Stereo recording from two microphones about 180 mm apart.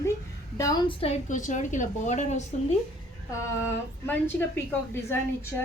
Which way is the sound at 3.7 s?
10° left (ahead or behind).